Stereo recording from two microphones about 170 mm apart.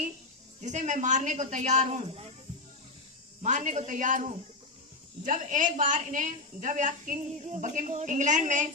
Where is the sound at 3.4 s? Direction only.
45° right (ahead or behind).